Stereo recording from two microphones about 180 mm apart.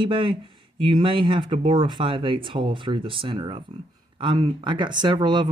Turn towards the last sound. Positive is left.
turn(degrees=-25)  # may be behind; listen again after turning